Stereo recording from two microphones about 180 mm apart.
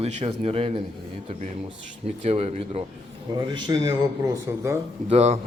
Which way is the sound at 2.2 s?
35° right (ahead or behind).